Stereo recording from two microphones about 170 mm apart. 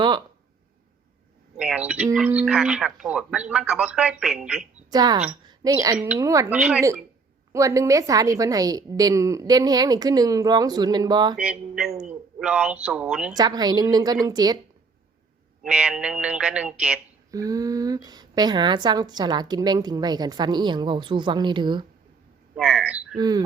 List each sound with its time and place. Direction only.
1.5 s speech: 5° right (ahead or behind)
4.9 s a woman's voice: 25° right (ahead or behind)
6.5 s speech: 5° right (ahead or behind)
7.5 s a woman's voice: 20° right (ahead or behind)
11.3 s speech: 5° right (ahead or behind)
13.3 s a woman's voice: 25° right (ahead or behind)
15.6 s speech: 5° right (ahead or behind)
17.3 s a woman's voice: 20° right (ahead or behind)
22.5 s speech: centre (ahead or behind)
23.1 s a woman's voice: 25° right (ahead or behind)